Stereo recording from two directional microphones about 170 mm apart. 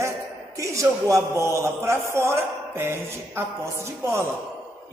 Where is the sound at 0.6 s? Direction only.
20° right (ahead or behind).